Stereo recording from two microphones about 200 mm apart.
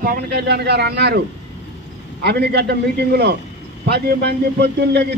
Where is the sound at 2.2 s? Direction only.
55° right (ahead or behind).